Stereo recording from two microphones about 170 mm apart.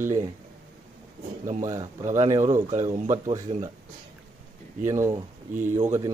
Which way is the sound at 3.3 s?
20° right (ahead or behind).